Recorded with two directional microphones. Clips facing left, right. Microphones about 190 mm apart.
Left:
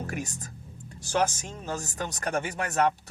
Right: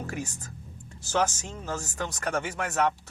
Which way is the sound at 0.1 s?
15° left (ahead or behind).